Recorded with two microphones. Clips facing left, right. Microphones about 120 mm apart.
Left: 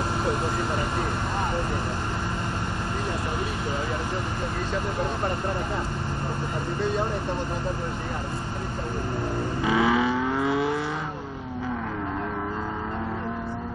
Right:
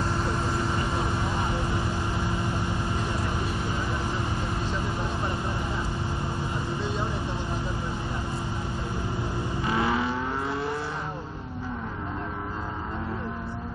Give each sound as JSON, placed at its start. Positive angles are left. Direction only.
{"t": 9.7, "sound": "vehicle", "side_deg": 90}